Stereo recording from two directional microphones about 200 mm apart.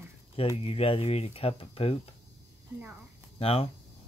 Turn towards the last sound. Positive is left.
turn(degrees=30)  # may be behind; listen again after turning